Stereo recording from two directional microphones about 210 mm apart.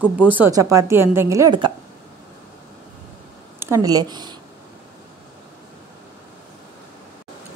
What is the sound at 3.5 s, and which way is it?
Speech, 15° right (ahead or behind).